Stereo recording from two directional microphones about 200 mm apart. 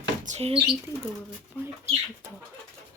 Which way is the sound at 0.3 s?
30° right (ahead or behind).